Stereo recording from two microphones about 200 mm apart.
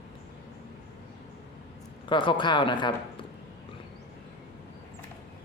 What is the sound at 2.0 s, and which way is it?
Speech, 25° left (ahead or behind).